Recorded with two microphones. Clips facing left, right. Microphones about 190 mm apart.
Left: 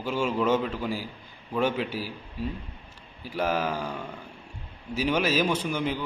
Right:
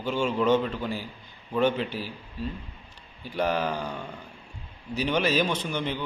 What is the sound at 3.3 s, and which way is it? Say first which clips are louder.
Speech: right 1 dB; 5° left (ahead or behind).